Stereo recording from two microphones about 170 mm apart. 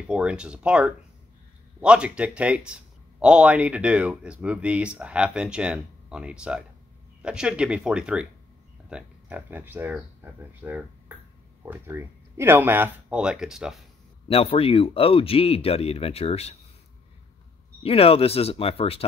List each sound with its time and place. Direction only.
0.0 s speech: 5° right (ahead or behind)
14.2 s speech: 35° left (ahead or behind)
17.8 s speech: 35° left (ahead or behind)